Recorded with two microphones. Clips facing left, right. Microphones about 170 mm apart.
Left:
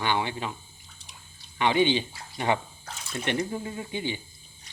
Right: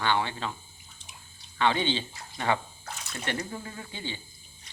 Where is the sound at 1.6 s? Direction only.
15° left (ahead or behind).